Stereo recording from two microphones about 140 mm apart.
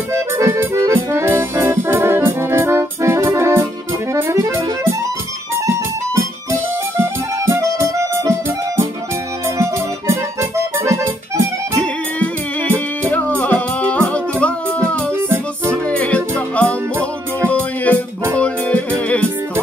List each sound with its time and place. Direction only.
0.1 s accordion: 20° right (ahead or behind)
4.1 s music: 20° right (ahead or behind)
7.0 s music: 20° right (ahead or behind)
12.7 s music: 10° left (ahead or behind)